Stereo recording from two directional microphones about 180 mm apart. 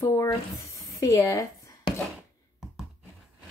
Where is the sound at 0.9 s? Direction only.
20° left (ahead or behind).